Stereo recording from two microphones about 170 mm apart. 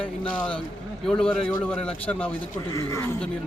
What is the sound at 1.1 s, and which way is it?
A man's voice, 5° left (ahead or behind).